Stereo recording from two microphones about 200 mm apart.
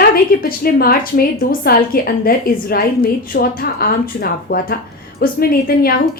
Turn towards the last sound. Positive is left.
turn(degrees=50)  # may be behind; listen again after turning